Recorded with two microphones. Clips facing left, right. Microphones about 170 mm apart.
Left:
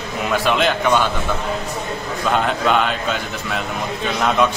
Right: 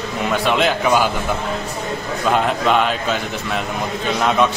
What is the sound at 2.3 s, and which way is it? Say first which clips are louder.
Speech: right 1 dB; centre (ahead or behind).